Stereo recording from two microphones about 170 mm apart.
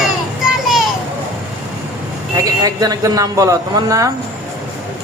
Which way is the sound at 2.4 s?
20° right (ahead or behind).